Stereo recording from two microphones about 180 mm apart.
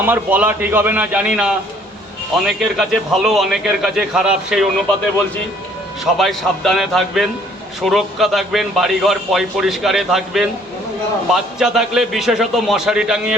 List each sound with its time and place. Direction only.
0.0 s a man's voice: 10° right (ahead or behind)
6.1 s a man's voice: centre (ahead or behind)